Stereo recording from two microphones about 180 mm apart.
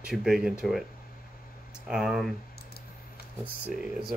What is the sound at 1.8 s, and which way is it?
Speech, 5° right (ahead or behind).